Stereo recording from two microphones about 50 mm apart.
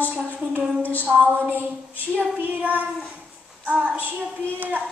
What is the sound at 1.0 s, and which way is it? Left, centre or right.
A woman's voice, right.